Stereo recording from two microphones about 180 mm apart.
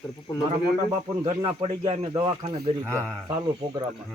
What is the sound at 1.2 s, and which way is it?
Speech, 35° right (ahead or behind).